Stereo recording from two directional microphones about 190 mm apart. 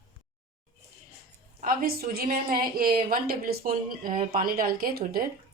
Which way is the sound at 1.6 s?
50° right (ahead or behind).